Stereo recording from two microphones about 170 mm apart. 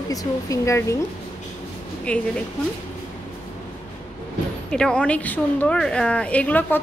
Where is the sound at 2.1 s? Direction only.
5° left (ahead or behind).